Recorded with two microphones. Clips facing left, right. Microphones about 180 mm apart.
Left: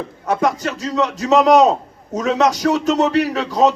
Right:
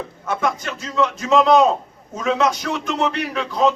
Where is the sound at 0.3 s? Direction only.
40° left (ahead or behind).